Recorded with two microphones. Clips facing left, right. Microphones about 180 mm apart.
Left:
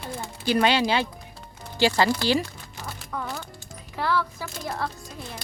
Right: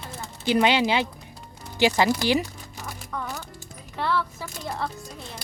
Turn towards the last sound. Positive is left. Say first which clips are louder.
# even
turn(degrees=0)  # may be behind; listen again after turning